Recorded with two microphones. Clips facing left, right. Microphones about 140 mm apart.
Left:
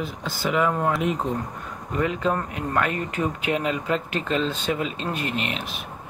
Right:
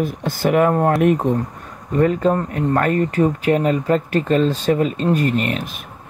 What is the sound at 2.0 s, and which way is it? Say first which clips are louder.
Speech: right 8 dB; 40° right (ahead or behind).